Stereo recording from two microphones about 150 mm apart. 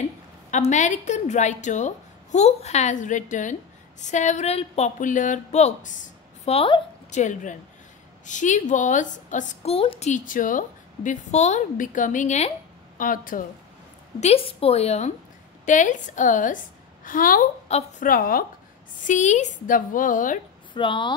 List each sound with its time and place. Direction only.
0.5 s a woman's voice: 50° left (ahead or behind)
7.1 s a woman's voice: 55° left (ahead or behind)
9.7 s a woman's voice: 40° left (ahead or behind); by 10.6 s 60° left (ahead or behind)
11.1 s a woman's voice: 50° left (ahead or behind); by 13.4 s 65° left (ahead or behind)
14.2 s a woman's voice: 40° left (ahead or behind); by 17.5 s 70° left (ahead or behind)
17.6 s a woman's voice: 45° left (ahead or behind)
18.0 s a woman's voice: 70° left (ahead or behind)
19.0 s a woman's voice: 50° left (ahead or behind)
20.7 s speech: 30° left (ahead or behind)